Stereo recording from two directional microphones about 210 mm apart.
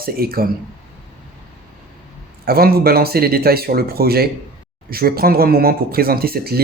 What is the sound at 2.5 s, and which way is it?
Speech, 45° right (ahead or behind).